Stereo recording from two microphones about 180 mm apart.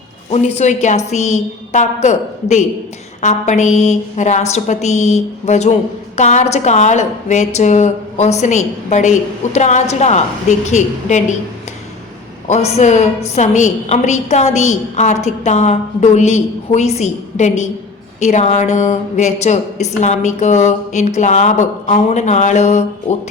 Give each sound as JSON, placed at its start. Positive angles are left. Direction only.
{"t": 0.3, "sound": "a woman's voice", "side_deg": 40}
{"t": 12.5, "sound": "a woman's voice", "side_deg": 40}